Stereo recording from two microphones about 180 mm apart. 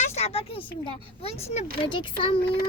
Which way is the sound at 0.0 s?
35° left (ahead or behind).